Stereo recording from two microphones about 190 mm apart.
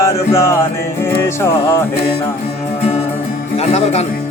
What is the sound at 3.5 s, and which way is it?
Speech, 35° left (ahead or behind).